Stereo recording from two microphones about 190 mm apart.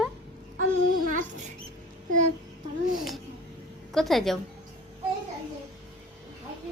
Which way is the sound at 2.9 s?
Centre (ahead or behind).